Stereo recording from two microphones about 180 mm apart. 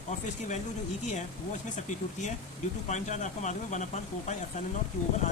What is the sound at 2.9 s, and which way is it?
Speech, 40° left (ahead or behind).